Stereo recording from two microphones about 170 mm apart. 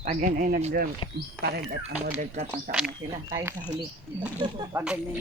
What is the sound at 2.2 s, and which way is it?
Speech, 40° right (ahead or behind).